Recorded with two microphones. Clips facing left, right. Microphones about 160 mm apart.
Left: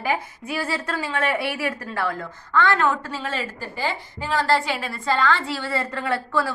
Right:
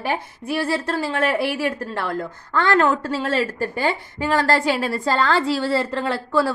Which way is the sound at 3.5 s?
55° right (ahead or behind).